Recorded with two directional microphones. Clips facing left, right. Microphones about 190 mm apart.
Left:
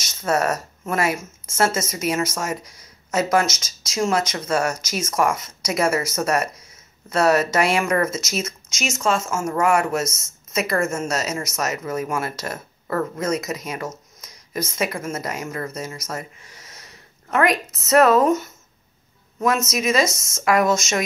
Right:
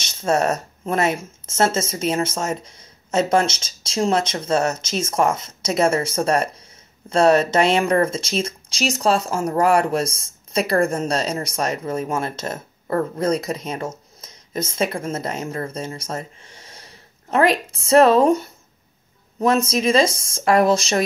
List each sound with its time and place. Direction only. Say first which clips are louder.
0.0 s speech: right 2 dB; 30° right (ahead or behind)